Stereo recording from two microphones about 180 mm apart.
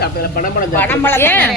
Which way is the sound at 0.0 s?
55° left (ahead or behind).